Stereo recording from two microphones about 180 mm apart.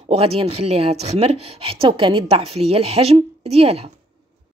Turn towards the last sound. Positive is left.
turn(degrees=-35)  # may be behind; listen again after turning